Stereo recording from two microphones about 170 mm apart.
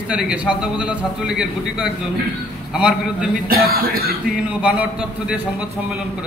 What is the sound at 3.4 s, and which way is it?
Speech, 60° right (ahead or behind).